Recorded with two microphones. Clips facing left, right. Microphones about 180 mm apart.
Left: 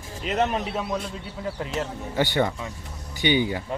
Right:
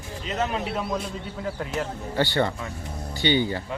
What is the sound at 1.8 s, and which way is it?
Speech, 15° left (ahead or behind).